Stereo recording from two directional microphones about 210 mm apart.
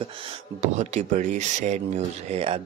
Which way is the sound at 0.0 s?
30° right (ahead or behind).